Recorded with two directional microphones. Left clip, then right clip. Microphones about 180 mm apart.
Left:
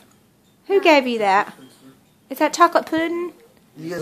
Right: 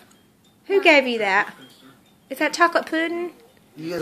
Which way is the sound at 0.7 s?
15° left (ahead or behind).